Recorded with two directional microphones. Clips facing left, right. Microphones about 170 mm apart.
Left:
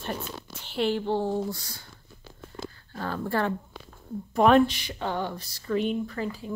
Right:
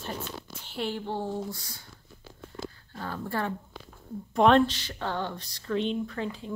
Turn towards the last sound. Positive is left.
turn(degrees=5)  # may be behind; listen again after turning